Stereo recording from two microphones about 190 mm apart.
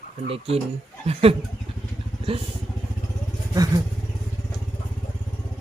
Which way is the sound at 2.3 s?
30° right (ahead or behind).